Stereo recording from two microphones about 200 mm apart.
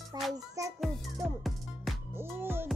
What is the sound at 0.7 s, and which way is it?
Music, centre (ahead or behind).